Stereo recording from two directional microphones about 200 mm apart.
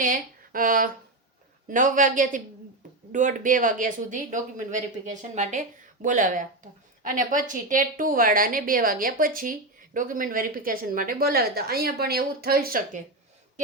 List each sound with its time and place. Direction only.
0.0 s a woman's voice: 45° right (ahead or behind)